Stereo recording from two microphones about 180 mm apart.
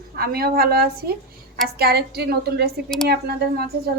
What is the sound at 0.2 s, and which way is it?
A woman's voice, 60° right (ahead or behind).